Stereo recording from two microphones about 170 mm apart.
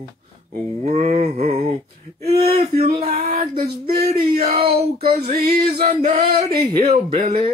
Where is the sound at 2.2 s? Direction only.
35° right (ahead or behind).